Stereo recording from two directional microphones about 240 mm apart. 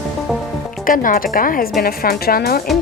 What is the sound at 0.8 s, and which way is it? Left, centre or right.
Speech, left.